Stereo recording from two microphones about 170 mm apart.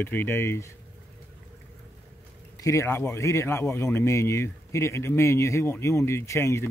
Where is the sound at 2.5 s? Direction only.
20° left (ahead or behind).